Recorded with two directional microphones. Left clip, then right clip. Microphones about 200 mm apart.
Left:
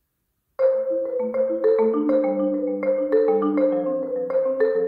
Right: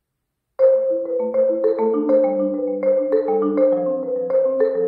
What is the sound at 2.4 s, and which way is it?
Music, centre (ahead or behind).